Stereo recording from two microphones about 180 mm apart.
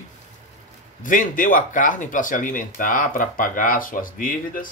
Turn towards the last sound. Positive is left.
turn(degrees=50)  # may be behind; listen again after turning